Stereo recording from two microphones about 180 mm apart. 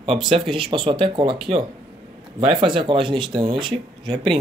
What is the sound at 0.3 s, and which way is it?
Speech, 30° right (ahead or behind).